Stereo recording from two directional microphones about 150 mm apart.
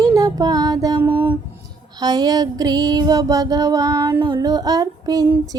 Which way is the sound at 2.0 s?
25° right (ahead or behind).